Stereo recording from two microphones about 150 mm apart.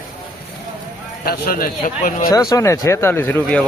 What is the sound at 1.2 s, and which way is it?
Speech, 75° left (ahead or behind).